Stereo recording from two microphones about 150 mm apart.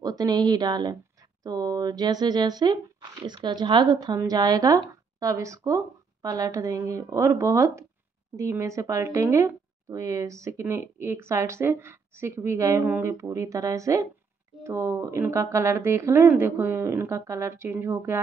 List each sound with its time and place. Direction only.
0.0 s speech: 25° right (ahead or behind)